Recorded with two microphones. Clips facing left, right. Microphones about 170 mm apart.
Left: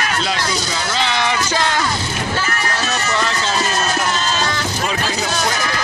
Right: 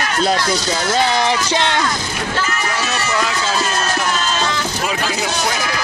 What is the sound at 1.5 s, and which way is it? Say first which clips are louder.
Speech: right 1 dB; 25° right (ahead or behind).